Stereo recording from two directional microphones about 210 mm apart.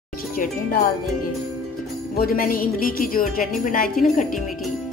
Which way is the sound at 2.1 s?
45° left (ahead or behind).